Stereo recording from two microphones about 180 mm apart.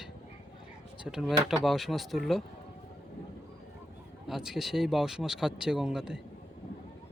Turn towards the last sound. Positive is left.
turn(degrees=-5)  # may be behind; listen again after turning